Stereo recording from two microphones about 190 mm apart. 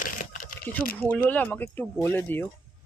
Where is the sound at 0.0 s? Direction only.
45° left (ahead or behind).